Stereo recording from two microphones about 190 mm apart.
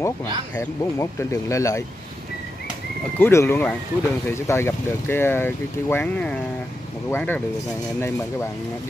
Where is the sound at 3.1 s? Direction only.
10° left (ahead or behind).